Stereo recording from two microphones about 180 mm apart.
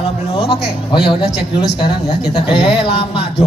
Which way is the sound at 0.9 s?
25° left (ahead or behind).